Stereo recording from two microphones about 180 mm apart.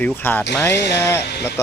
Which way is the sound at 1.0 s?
15° left (ahead or behind).